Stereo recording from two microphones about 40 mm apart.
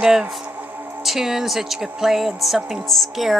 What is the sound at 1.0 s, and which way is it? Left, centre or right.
A woman's voice, centre.